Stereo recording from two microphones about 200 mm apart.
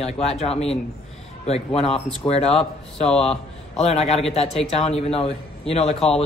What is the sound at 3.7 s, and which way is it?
A man's voice, 30° left (ahead or behind).